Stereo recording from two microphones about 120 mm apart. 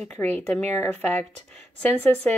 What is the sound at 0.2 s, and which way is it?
A woman's voice, 15° left (ahead or behind).